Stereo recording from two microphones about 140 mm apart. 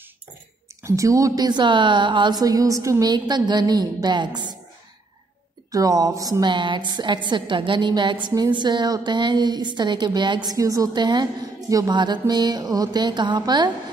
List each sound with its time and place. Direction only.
0.8 s a woman's voice: 20° right (ahead or behind)
5.7 s a woman's voice: 25° right (ahead or behind)